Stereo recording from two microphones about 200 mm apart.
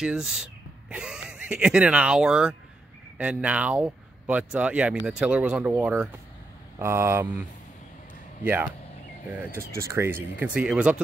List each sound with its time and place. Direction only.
0.0 s speech: 5° right (ahead or behind)
9.4 s speech: 10° right (ahead or behind)